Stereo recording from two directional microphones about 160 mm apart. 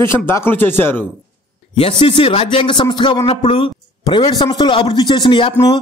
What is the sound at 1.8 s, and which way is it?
Speech, 35° left (ahead or behind).